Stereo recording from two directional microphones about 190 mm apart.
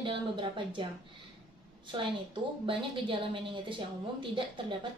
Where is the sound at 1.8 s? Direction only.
25° right (ahead or behind).